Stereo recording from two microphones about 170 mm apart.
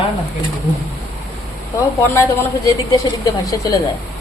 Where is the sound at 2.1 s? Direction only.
15° left (ahead or behind).